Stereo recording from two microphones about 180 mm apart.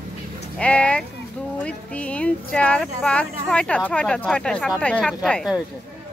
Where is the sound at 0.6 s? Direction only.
5° left (ahead or behind).